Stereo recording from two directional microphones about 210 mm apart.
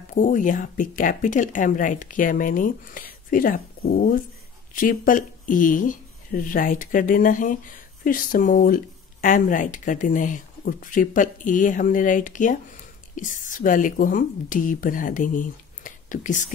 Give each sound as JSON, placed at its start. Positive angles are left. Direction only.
{"t": 0.1, "sound": "speech", "side_deg": 40}